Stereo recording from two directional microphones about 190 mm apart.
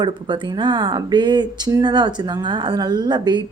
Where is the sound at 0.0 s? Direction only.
25° right (ahead or behind).